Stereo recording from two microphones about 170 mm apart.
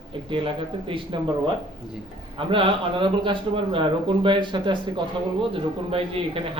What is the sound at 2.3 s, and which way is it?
Speech, 30° right (ahead or behind).